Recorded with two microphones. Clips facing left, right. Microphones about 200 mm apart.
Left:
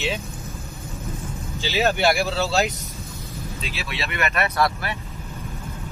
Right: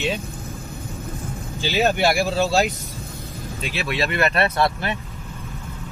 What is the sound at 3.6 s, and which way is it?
Speech, 50° right (ahead or behind).